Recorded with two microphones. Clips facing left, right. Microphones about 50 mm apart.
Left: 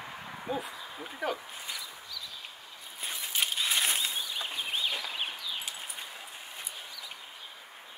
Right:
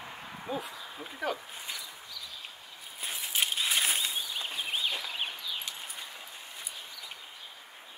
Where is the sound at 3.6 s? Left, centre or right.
Centre.